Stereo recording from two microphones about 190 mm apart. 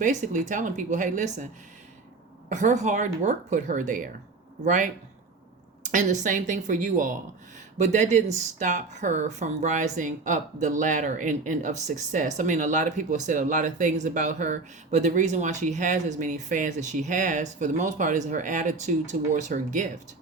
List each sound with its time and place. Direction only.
0.0 s speech: 40° right (ahead or behind)
2.5 s speech: 40° right (ahead or behind)